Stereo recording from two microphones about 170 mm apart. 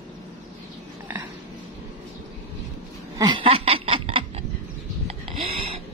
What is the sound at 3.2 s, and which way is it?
Burping, 30° right (ahead or behind).